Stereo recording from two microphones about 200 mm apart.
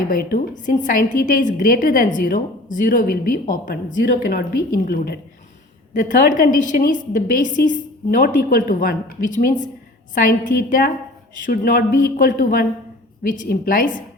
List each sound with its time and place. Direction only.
0.1 s a woman's voice: 45° left (ahead or behind)